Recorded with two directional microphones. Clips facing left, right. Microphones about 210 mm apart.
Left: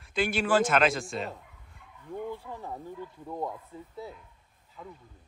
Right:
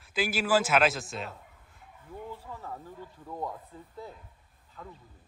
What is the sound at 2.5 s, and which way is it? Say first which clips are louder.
Speech: left 3 dB; 15° left (ahead or behind).